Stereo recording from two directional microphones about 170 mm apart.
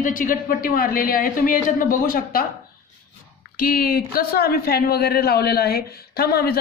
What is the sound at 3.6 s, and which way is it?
Speech, 60° left (ahead or behind).